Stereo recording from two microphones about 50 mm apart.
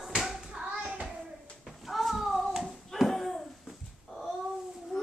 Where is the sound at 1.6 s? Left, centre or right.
Centre.